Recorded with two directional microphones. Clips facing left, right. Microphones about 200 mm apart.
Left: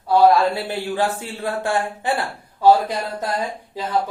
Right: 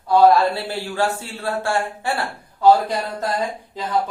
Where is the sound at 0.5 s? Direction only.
15° left (ahead or behind).